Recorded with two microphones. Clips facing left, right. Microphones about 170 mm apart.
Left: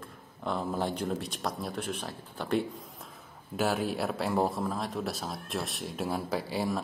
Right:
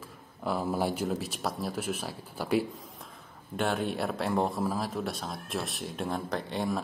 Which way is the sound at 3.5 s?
5° left (ahead or behind).